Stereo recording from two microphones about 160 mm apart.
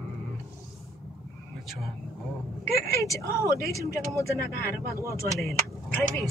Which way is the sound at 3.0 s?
20° left (ahead or behind).